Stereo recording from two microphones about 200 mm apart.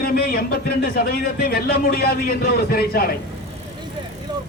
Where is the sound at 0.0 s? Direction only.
50° left (ahead or behind).